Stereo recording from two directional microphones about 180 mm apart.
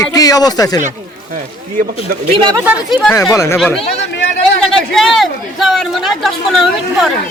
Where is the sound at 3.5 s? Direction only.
Centre (ahead or behind).